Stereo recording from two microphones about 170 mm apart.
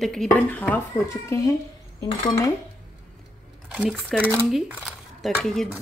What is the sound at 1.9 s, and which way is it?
Cutlery, 20° left (ahead or behind).